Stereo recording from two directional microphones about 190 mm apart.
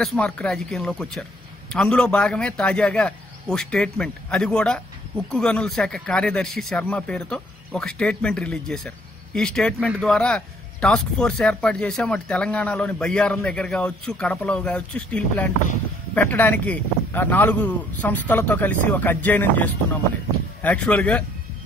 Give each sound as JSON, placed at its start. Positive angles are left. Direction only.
{"t": 0.0, "sound": "a man's voice", "side_deg": 5}